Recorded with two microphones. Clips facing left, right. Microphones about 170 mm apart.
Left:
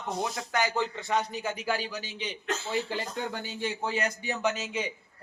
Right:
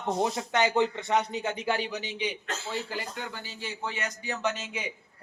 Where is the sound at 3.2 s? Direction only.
45° left (ahead or behind).